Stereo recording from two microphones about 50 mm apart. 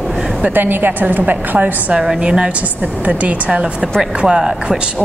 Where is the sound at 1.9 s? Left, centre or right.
Centre.